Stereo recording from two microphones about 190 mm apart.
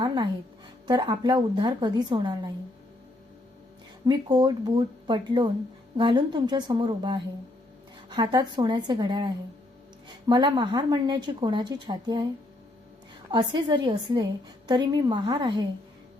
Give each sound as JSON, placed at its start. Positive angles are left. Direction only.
{"t": 0.0, "sound": "music", "side_deg": -25}
{"t": 0.9, "sound": "a woman's voice", "side_deg": -25}
{"t": 4.0, "sound": "a woman's voice", "side_deg": -25}
{"t": 13.3, "sound": "a woman's voice", "side_deg": -25}